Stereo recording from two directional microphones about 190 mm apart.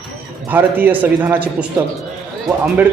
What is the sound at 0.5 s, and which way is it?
Speech, 10° right (ahead or behind).